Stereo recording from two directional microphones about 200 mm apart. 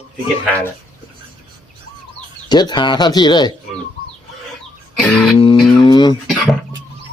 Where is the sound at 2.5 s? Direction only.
20° left (ahead or behind).